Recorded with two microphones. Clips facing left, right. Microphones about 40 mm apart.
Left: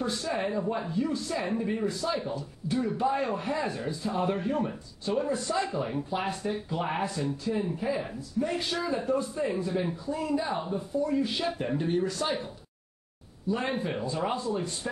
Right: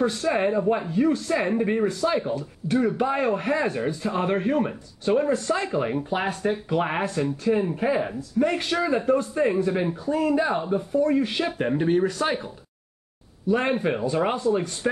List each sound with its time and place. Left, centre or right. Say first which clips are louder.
0.0 s speech: right 8 dB; right
13.5 s speech: right 7 dB; right